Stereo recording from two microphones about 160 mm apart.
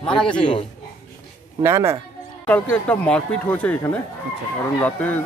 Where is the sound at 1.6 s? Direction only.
15° right (ahead or behind).